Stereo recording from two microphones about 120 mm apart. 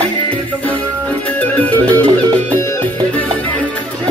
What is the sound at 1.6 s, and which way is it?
Music, 15° left (ahead or behind).